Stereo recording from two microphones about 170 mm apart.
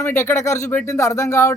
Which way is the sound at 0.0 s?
15° left (ahead or behind).